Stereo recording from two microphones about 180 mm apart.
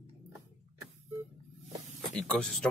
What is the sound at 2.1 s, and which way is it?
Speech, 5° left (ahead or behind).